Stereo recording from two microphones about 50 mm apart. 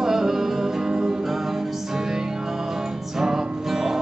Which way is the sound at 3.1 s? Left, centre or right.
Centre.